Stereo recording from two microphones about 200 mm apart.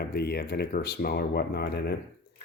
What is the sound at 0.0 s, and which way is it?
Speech, 50° left (ahead or behind).